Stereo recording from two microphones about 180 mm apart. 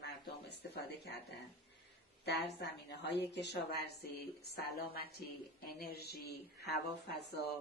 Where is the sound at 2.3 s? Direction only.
70° left (ahead or behind).